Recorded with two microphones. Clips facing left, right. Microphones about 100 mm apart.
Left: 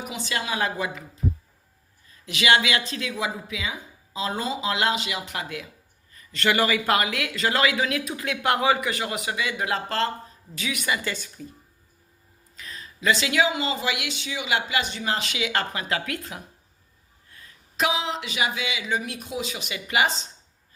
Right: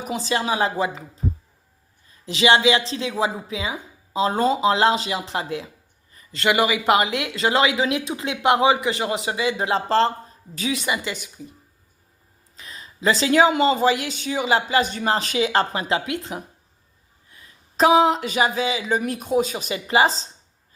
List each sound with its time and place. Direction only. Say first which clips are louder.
0.1 s speech: right 8 dB; 35° right (ahead or behind)
2.2 s speech: right 5 dB; 30° right (ahead or behind)
12.5 s speech: right 1 dB; 25° right (ahead or behind)
17.7 s speech: right 10 dB; 40° right (ahead or behind)